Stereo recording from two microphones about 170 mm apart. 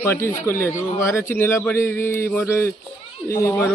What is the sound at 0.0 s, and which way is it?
A man's voice, 15° left (ahead or behind).